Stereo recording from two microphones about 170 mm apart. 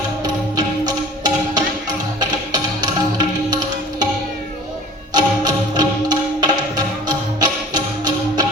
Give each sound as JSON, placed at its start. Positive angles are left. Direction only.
{"t": 0.5, "sound": "music", "side_deg": -25}
{"t": 5.1, "sound": "music", "side_deg": -25}